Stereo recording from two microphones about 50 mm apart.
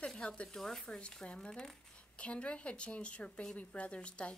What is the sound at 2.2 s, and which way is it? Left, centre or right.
A woman's voice, left.